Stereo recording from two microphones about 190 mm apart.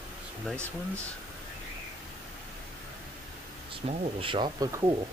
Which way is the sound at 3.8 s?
25° right (ahead or behind).